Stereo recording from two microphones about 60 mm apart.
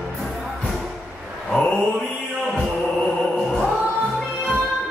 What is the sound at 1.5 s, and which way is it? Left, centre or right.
Mantra, centre.